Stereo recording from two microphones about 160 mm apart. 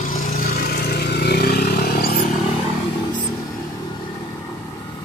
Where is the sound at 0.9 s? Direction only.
85° left; by 2.2 s 70° left (ahead or behind).